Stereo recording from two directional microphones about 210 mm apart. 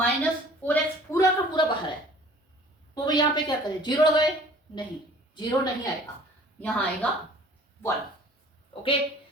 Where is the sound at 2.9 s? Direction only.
20° left (ahead or behind).